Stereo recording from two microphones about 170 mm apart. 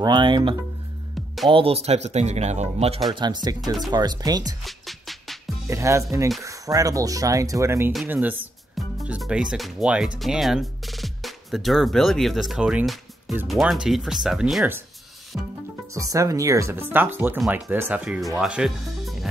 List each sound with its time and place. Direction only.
0.0 s speech: 25° right (ahead or behind)
3.2 s speech: 25° right (ahead or behind)
4.6 s music: centre (ahead or behind)
5.7 s speech: 15° right (ahead or behind)